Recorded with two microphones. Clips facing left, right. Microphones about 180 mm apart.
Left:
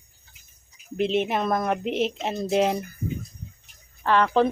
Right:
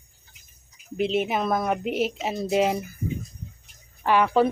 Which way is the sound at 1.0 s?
Centre (ahead or behind).